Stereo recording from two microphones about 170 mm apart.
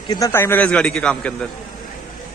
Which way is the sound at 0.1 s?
15° left (ahead or behind).